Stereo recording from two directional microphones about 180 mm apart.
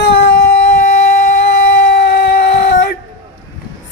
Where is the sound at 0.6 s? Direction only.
40° left (ahead or behind).